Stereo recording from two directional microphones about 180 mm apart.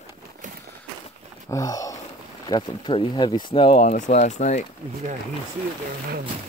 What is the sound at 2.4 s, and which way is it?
Speech, 25° left (ahead or behind).